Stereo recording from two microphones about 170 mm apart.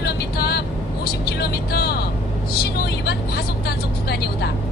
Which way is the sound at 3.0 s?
70° left (ahead or behind).